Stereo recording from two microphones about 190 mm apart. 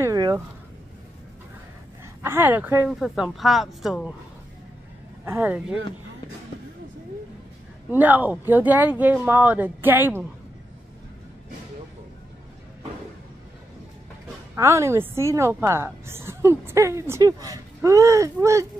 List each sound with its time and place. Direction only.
0.0 s a sound: 20° right (ahead or behind)
2.2 s a woman's voice: 10° right (ahead or behind)
5.2 s a woman's voice: 10° right (ahead or behind)
7.9 s a woman's voice: 10° right (ahead or behind)
14.5 s a woman's voice: 15° right (ahead or behind)